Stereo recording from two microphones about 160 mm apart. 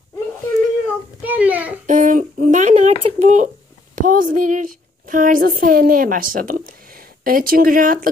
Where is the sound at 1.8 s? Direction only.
50° right (ahead or behind).